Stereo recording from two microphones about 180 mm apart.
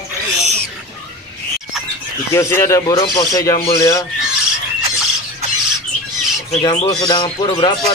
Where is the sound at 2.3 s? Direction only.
15° left (ahead or behind).